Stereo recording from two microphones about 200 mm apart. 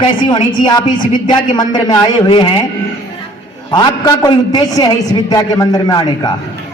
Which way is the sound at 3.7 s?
20° left (ahead or behind).